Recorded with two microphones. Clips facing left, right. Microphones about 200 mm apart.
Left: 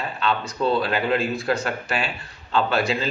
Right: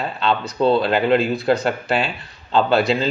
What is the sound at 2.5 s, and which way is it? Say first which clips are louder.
Speech: right 5 dB; 30° right (ahead or behind).